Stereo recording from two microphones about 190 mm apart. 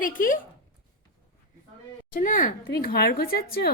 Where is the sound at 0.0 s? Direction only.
45° left (ahead or behind).